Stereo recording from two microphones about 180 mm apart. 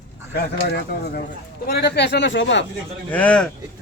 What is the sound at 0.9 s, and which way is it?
Speech, 55° left (ahead or behind).